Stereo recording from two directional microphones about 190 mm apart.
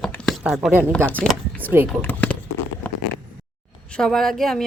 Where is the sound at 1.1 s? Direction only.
10° left (ahead or behind).